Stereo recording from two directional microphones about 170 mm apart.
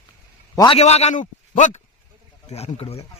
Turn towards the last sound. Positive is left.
turn(degrees=35)  # may be behind; listen again after turning